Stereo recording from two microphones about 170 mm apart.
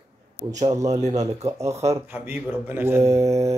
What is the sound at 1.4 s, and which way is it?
Speech, 20° right (ahead or behind).